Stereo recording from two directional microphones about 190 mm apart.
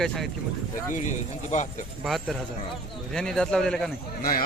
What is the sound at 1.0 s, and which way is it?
Speech, 40° left (ahead or behind).